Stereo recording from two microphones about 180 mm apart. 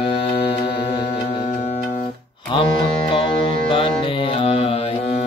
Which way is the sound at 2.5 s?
30° left (ahead or behind).